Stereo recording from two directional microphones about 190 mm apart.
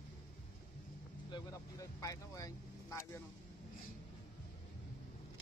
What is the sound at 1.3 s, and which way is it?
Speech, 20° left (ahead or behind).